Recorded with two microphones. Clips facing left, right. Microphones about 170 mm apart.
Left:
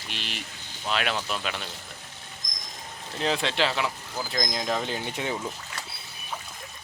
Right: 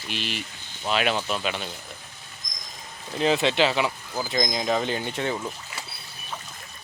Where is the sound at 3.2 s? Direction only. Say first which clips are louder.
Right 5 dB; 5° right (ahead or behind).